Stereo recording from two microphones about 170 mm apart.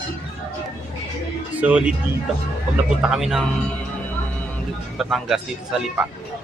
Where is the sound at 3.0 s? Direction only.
5° right (ahead or behind).